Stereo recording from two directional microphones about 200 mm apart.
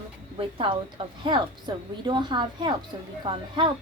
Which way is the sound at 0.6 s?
25° right (ahead or behind).